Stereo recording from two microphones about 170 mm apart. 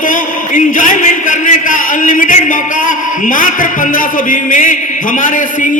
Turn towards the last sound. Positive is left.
turn(degrees=50)  # may be behind; listen again after turning